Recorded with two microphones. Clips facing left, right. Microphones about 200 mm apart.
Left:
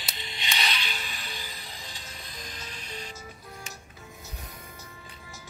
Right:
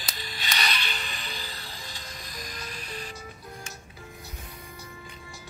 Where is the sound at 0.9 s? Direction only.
5° left (ahead or behind).